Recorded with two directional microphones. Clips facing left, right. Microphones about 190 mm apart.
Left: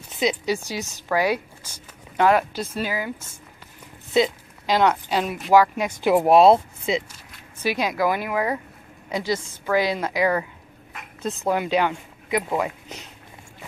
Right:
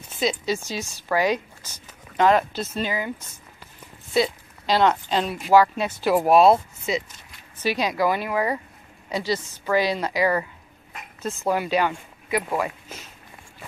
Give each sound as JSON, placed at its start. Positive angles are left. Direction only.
{"t": 0.2, "sound": "a woman's voice", "side_deg": 15}
{"t": 4.1, "sound": "speech", "side_deg": 15}
{"t": 7.6, "sound": "a woman's voice", "side_deg": 10}